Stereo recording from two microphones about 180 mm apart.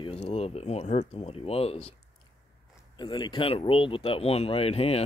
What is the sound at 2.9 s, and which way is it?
Speech, 25° left (ahead or behind).